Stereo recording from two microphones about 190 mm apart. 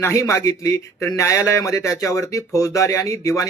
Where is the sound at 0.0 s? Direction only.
15° left (ahead or behind).